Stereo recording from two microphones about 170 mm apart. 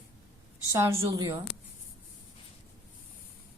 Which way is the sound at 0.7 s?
15° right (ahead or behind).